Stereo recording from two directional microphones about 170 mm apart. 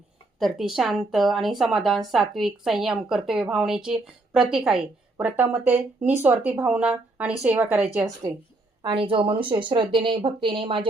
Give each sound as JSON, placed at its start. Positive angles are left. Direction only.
{"t": 0.3, "sound": "speech", "side_deg": 0}
{"t": 8.8, "sound": "speech", "side_deg": -30}